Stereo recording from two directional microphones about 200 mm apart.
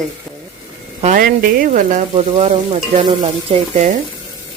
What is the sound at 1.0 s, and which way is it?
Frying, 45° right (ahead or behind).